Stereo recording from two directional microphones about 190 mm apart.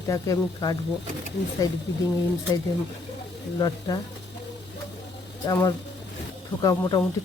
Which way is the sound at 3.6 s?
20° left (ahead or behind).